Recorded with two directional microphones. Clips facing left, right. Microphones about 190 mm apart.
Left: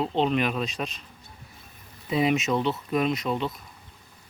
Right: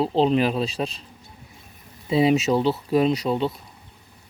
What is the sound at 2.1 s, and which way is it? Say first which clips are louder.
Speech: right 5 dB; 30° right (ahead or behind).